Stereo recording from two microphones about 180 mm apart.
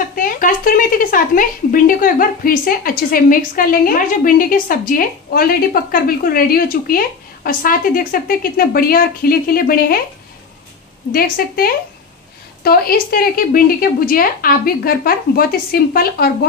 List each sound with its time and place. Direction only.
0.1 s speech: 50° left (ahead or behind)
11.1 s a woman's voice: 55° left (ahead or behind)